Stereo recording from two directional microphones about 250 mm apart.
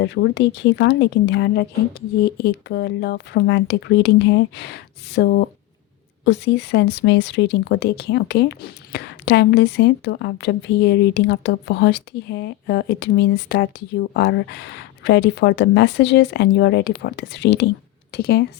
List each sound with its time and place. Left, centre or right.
0.0 s a woman's voice: left